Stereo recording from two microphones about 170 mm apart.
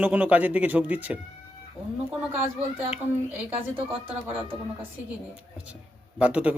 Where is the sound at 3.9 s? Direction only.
35° right (ahead or behind).